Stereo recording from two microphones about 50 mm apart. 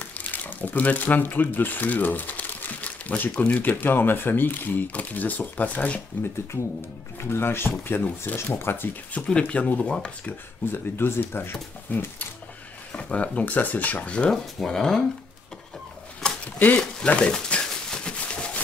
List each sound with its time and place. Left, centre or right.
0.0 s speech: left
3.8 s speech: left
6.5 s speech: left
8.4 s speech: left
9.2 s speech: left
9.5 s speech: left
10.6 s speech: left
12.9 s speech: left
14.3 s speech: centre
16.5 s speech: left
17.0 s a sound: left